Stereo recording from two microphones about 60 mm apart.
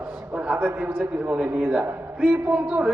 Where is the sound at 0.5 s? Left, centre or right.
Right.